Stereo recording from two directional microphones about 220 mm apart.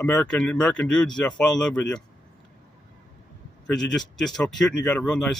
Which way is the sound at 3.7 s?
Centre (ahead or behind).